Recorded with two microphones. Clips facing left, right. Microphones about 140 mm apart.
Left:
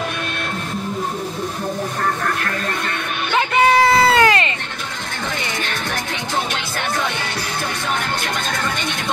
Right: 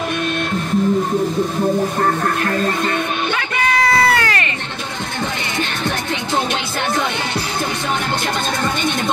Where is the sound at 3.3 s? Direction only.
25° left (ahead or behind).